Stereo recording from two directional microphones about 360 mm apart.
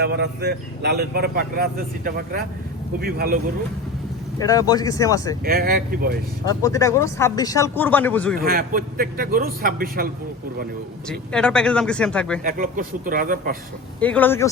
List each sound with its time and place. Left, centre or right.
0.0 s speech: right
4.4 s speech: centre
5.5 s speech: right
6.4 s speech: centre
8.4 s speech: right
11.1 s speech: centre
12.4 s speech: right
14.0 s speech: centre